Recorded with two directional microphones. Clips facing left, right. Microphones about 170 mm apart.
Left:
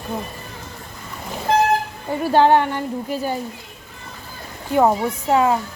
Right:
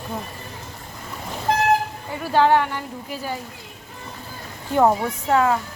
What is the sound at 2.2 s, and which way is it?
Speech, 30° left (ahead or behind).